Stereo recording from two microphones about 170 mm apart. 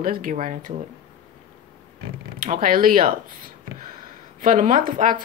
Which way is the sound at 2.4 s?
55° right (ahead or behind).